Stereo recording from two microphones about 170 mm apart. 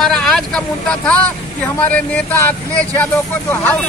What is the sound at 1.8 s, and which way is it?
Speech, 10° left (ahead or behind).